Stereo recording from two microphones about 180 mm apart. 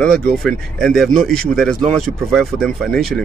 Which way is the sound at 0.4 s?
Centre (ahead or behind).